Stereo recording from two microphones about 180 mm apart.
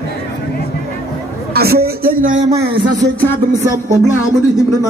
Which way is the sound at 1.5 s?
60° right (ahead or behind).